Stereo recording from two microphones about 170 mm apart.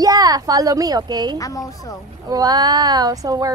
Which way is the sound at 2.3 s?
25° right (ahead or behind).